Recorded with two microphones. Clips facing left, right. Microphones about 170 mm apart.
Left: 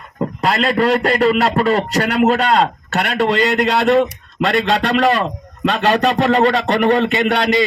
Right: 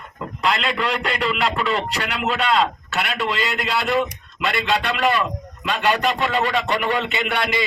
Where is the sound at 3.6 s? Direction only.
60° left (ahead or behind).